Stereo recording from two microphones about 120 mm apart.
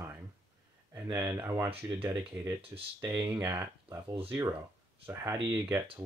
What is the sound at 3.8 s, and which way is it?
Speech, 50° right (ahead or behind).